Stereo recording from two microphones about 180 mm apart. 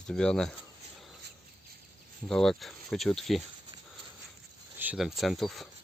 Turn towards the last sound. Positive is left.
turn(degrees=0)  # may be behind; listen again after turning